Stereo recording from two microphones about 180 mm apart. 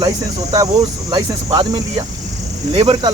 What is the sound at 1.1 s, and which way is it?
Speech, 25° right (ahead or behind).